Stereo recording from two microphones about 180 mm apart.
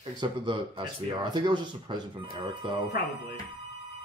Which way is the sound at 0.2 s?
25° right (ahead or behind).